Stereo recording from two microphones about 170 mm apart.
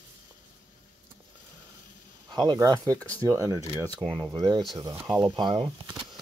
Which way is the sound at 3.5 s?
20° left (ahead or behind).